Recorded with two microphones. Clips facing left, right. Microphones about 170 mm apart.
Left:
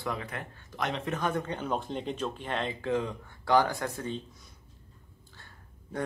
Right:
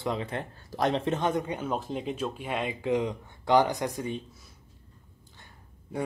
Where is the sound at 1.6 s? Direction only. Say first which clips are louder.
Right 1 dB; 5° right (ahead or behind).